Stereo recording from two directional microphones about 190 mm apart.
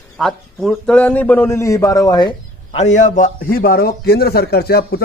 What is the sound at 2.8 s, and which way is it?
A man's voice, 40° left (ahead or behind).